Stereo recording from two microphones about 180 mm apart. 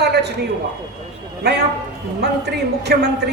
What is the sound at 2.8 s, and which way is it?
Speech, 65° right (ahead or behind).